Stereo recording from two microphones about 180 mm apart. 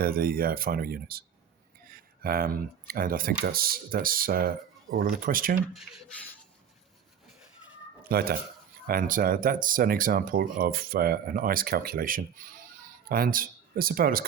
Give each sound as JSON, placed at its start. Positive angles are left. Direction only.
{"t": 0.0, "sound": "speech", "side_deg": -55}
{"t": 8.1, "sound": "speech", "side_deg": -60}